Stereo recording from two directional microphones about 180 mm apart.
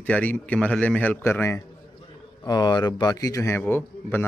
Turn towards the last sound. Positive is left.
turn(degrees=10)  # may be behind; listen again after turning